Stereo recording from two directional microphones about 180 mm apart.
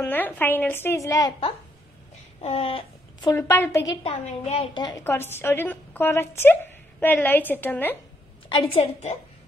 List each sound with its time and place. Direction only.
0.0 s a woman's voice: 10° left (ahead or behind)
2.4 s speech: 30° left (ahead or behind)
3.3 s a woman's voice: 15° left (ahead or behind)
4.0 s a woman's voice: 35° left (ahead or behind)
4.8 s a woman's voice: 15° left (ahead or behind)
8.5 s a woman's voice: 30° left (ahead or behind)